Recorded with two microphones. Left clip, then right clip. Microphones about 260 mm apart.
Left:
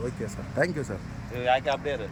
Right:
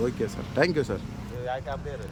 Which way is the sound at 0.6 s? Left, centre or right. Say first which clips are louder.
Right 3 dB; centre.